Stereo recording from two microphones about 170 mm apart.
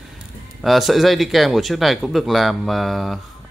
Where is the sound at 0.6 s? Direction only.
Centre (ahead or behind).